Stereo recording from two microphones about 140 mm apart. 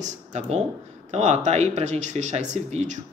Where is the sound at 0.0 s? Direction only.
55° right (ahead or behind).